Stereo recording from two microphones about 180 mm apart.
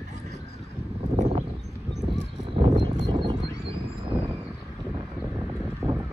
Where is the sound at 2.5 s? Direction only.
30° right (ahead or behind).